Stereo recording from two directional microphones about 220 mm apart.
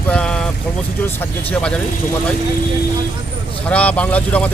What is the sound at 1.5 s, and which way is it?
Speech, 5° left (ahead or behind).